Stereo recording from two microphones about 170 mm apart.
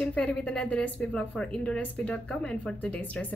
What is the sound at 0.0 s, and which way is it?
A woman's voice, 5° left (ahead or behind).